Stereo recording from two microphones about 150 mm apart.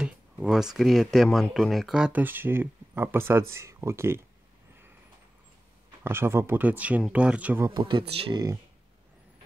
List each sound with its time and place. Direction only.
0.0 s speech: 5° right (ahead or behind)
6.0 s speech: 15° right (ahead or behind)
7.6 s speech: 20° right (ahead or behind)
8.1 s speech: 40° right (ahead or behind)